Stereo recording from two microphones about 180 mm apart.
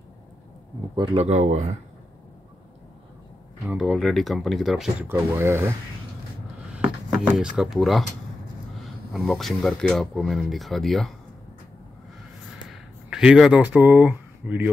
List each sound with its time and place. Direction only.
0.9 s speech: 30° right (ahead or behind)
3.6 s speech: centre (ahead or behind)
5.0 s speech: 15° right (ahead or behind)
6.7 s a sound: 5° right (ahead or behind)
9.1 s speech: centre (ahead or behind)
12.6 s a sound: 5° right (ahead or behind)